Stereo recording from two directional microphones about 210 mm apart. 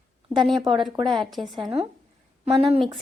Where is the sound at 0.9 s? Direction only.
20° right (ahead or behind).